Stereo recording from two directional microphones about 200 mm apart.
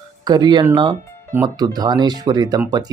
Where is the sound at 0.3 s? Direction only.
20° right (ahead or behind).